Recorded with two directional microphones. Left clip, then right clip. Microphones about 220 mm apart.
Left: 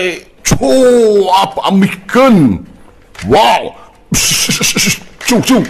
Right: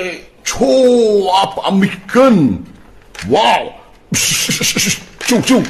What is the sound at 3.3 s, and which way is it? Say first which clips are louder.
Speech: left 3 dB; 30° left (ahead or behind).